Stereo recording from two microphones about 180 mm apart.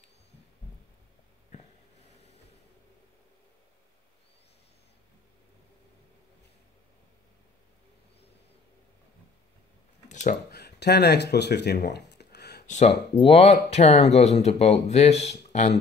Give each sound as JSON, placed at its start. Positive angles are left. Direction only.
{"t": 10.0, "sound": "a sound", "side_deg": 40}
{"t": 10.5, "sound": "speech", "side_deg": 65}
{"t": 12.6, "sound": "speech", "side_deg": 40}